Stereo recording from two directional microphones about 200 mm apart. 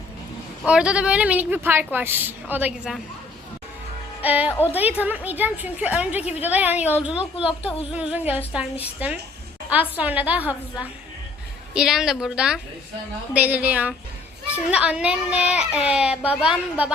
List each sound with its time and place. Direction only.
0.6 s a woman's voice: 5° right (ahead or behind)
4.2 s a woman's voice: 10° right (ahead or behind)
11.7 s a child's voice: 5° right (ahead or behind)